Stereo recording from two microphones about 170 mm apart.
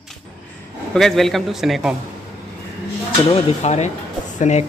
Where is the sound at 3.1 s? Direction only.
35° left (ahead or behind).